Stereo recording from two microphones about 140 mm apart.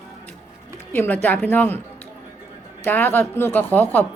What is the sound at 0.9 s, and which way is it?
Speech, 15° left (ahead or behind).